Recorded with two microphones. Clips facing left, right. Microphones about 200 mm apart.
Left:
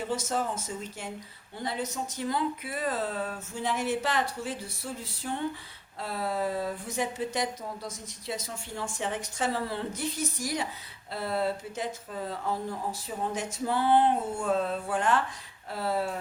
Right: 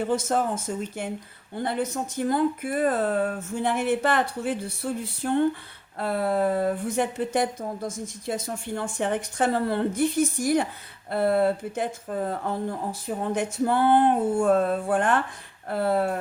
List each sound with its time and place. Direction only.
0.1 s speech: 55° right (ahead or behind)